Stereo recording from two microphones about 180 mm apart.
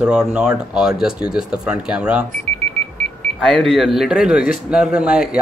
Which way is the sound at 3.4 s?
Centre (ahead or behind).